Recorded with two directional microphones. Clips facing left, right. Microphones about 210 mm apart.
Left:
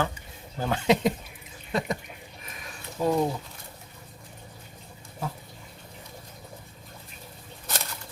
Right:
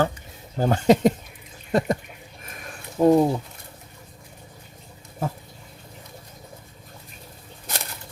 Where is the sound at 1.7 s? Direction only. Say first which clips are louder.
Right 7 dB; 45° right (ahead or behind).